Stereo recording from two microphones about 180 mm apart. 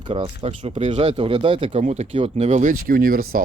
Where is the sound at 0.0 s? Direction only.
35° right (ahead or behind).